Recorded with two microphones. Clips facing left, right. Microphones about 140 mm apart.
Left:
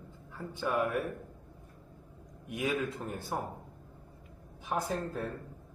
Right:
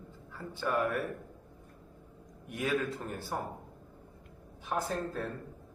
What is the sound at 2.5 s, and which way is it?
Speech, 10° left (ahead or behind).